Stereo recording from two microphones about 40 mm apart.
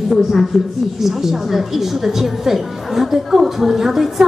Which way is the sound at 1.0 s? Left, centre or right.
Centre.